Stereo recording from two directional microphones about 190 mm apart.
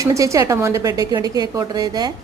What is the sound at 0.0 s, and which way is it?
A woman's voice, 15° right (ahead or behind).